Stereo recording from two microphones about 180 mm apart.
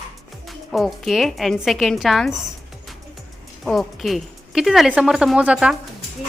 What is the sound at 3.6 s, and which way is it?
Speech, centre (ahead or behind).